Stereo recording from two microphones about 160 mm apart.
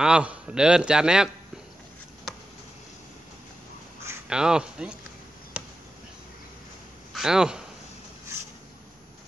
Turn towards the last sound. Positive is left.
turn(degrees=-5)  # may be behind; listen again after turning